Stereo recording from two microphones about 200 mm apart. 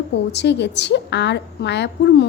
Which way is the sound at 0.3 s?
60° left (ahead or behind).